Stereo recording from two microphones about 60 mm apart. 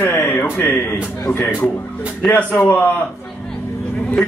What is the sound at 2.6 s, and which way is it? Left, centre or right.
Speech, left.